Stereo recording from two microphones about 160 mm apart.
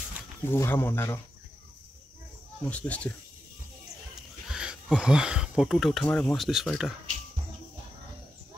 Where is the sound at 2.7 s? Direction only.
10° left (ahead or behind).